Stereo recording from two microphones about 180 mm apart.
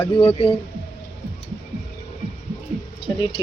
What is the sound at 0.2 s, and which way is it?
Speech, 30° left (ahead or behind).